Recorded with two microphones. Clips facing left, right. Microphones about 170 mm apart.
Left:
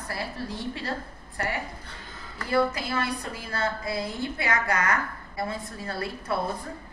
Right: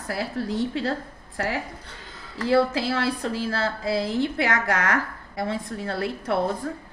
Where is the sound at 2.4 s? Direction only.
90° right.